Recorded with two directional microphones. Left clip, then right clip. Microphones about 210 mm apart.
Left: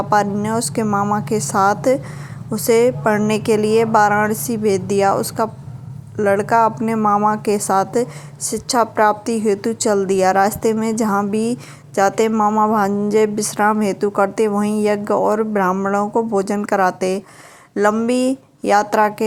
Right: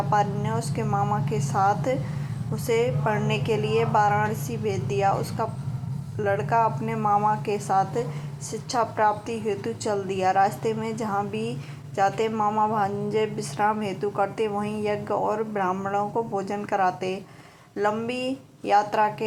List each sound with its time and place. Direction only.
0.1 s a woman's voice: 55° left (ahead or behind)